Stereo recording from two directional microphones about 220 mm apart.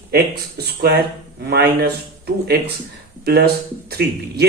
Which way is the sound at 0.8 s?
45° right (ahead or behind).